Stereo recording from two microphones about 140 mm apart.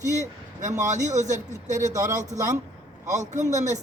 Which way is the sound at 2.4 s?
20° right (ahead or behind).